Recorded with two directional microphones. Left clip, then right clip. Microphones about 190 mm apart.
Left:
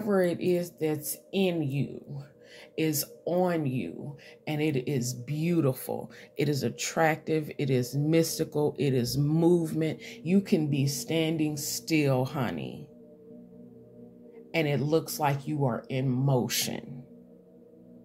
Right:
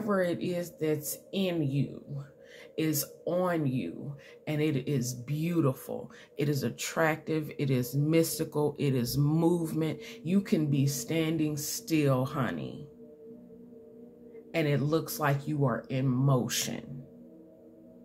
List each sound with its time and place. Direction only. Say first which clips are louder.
0.0 s a woman's voice: left 3 dB; 20° left (ahead or behind)
14.5 s speech: left 2 dB; 20° left (ahead or behind)